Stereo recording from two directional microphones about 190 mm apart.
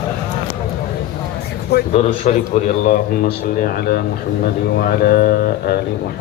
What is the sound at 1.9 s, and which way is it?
Speech, 35° left (ahead or behind).